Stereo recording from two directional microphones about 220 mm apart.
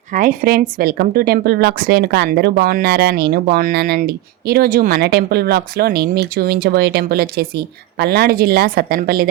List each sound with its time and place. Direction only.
0.1 s speech: 35° right (ahead or behind)